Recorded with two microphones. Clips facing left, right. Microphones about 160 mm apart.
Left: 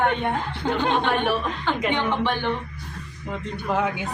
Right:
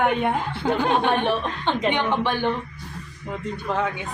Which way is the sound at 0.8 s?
10° right (ahead or behind).